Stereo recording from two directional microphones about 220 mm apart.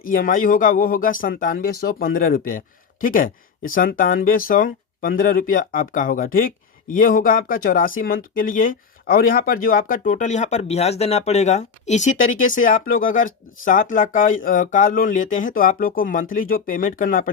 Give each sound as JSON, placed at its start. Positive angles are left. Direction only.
{"t": 0.0, "sound": "speech", "side_deg": 40}